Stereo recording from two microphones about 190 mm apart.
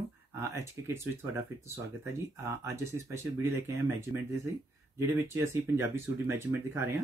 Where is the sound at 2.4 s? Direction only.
15° right (ahead or behind).